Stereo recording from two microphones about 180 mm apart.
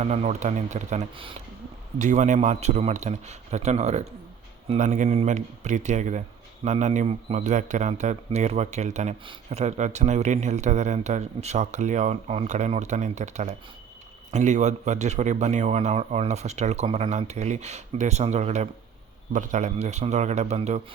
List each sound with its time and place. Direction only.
0.0 s speech: 40° right (ahead or behind)
2.0 s speech: 40° right (ahead or behind)